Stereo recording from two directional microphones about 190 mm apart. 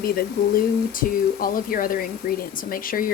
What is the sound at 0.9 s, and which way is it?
A woman's voice, 50° left (ahead or behind).